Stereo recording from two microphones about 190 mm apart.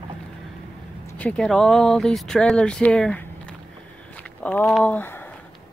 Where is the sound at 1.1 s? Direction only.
5° left (ahead or behind).